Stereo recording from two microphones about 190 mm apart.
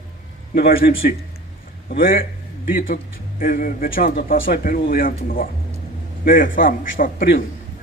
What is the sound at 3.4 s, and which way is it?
A man's voice, 45° left (ahead or behind).